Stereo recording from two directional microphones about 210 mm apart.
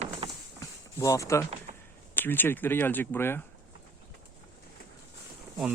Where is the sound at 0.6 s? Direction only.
15° left (ahead or behind).